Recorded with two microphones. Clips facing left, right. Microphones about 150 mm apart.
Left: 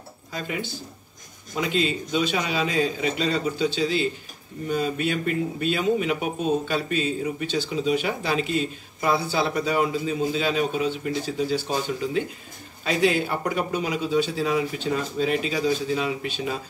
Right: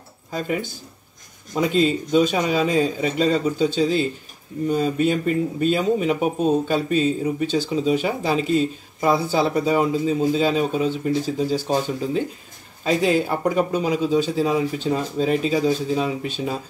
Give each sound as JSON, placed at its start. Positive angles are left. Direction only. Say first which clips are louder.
{"t": 1.6, "sound": "speech", "louder": "right 5 dB", "side_deg": -40}